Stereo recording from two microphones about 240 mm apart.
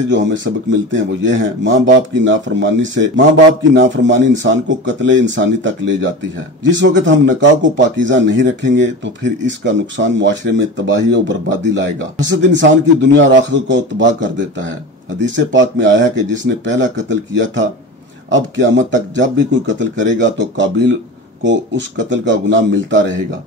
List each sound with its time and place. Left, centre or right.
0.1 s speech: right